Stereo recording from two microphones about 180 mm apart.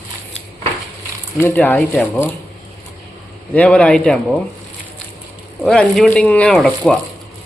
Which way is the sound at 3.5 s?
5° left (ahead or behind).